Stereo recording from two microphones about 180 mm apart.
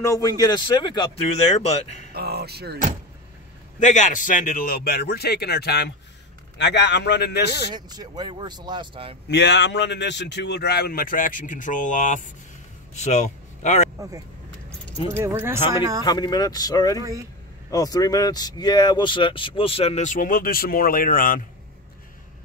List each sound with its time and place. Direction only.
0.0 s speech: 20° left (ahead or behind)
2.1 s speech: 60° right (ahead or behind)
3.8 s a man's voice: 45° left (ahead or behind); by 7.5 s 65° left (ahead or behind)
7.7 s speech: 25° right (ahead or behind)
9.3 s speech: 75° left (ahead or behind); by 13.8 s 40° left (ahead or behind)
15.0 s speech: 15° right (ahead or behind)
16.0 s speech: 20° left (ahead or behind); by 21.4 s 50° left (ahead or behind)